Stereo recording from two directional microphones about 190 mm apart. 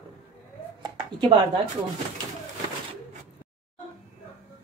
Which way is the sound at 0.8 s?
25° right (ahead or behind).